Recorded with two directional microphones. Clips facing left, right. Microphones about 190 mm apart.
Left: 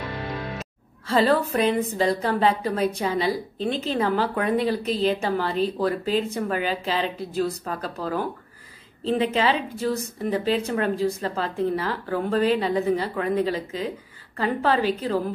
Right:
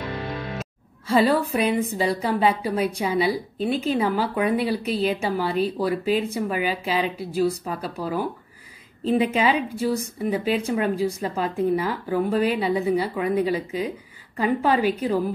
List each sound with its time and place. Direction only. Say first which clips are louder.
1.0 s a woman's voice: right 1 dB; 10° right (ahead or behind)